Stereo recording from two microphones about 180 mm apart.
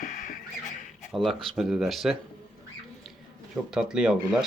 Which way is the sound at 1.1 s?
Centre (ahead or behind).